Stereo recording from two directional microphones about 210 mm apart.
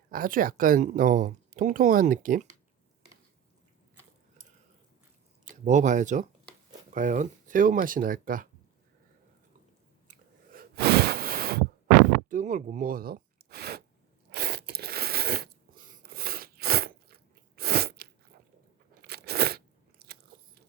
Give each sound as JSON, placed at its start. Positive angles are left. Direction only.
{"t": 0.1, "sound": "speech", "side_deg": -40}
{"t": 5.6, "sound": "speech", "side_deg": -35}
{"t": 10.1, "sound": "a sound", "side_deg": -45}
{"t": 14.3, "sound": "crunch", "side_deg": -50}